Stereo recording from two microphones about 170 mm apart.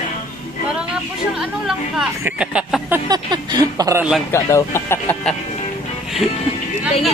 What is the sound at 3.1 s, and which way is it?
Speech, 25° right (ahead or behind).